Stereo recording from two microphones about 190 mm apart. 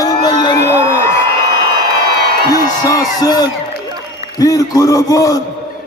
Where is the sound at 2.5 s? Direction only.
20° left (ahead or behind).